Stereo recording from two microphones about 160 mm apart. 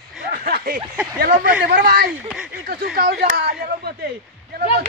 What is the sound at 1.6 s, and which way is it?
Speech, 80° right.